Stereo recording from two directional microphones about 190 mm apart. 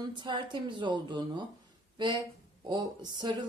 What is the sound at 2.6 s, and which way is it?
Speech, 20° right (ahead or behind).